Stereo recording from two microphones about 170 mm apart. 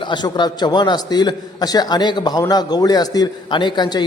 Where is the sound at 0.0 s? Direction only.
25° left (ahead or behind).